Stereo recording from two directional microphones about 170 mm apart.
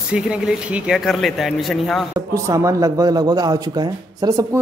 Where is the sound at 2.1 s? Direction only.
20° right (ahead or behind).